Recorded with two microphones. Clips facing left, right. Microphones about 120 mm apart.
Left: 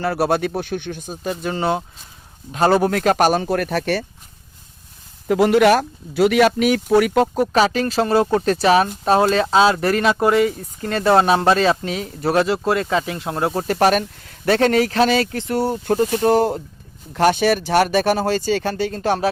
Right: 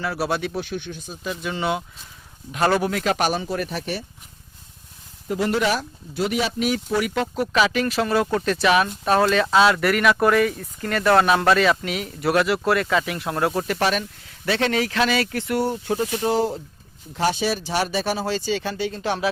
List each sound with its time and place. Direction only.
0.0 s speech: 50° left (ahead or behind); by 2.8 s 30° left (ahead or behind)
2.8 s speech: 45° left (ahead or behind)
3.4 s speech: 60° left (ahead or behind)
5.3 s speech: 85° left; by 15.8 s 35° left (ahead or behind)
15.8 s speech: 50° left (ahead or behind)